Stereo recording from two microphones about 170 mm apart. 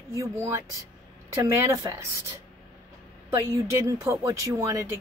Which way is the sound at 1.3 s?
15° right (ahead or behind).